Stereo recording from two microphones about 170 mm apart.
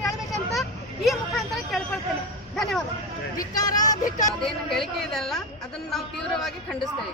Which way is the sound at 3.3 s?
20° left (ahead or behind).